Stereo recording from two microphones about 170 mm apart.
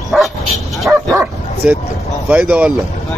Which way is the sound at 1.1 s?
15° right (ahead or behind).